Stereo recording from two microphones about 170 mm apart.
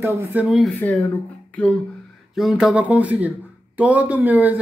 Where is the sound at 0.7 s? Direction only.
10° left (ahead or behind).